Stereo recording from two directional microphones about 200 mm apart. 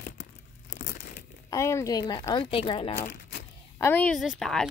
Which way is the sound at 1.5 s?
15° left (ahead or behind).